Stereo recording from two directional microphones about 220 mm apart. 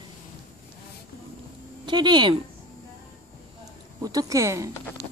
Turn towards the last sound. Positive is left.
turn(degrees=-15)  # may be behind; listen again after turning